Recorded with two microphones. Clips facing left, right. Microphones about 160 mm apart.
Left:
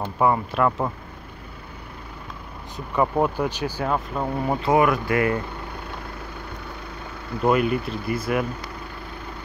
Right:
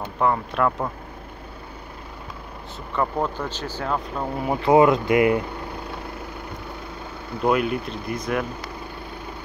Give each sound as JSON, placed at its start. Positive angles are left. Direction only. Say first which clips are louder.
{"t": 0.0, "sound": "speech", "louder": "left 2 dB", "side_deg": 10}
{"t": 3.0, "sound": "speech", "louder": "left 3 dB", "side_deg": 10}
{"t": 4.6, "sound": "speech", "louder": "right 4 dB", "side_deg": -20}
{"t": 7.4, "sound": "speech", "louder": "left 1 dB", "side_deg": 0}